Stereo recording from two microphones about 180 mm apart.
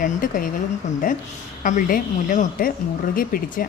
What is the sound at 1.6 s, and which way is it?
A woman's voice, 45° left (ahead or behind).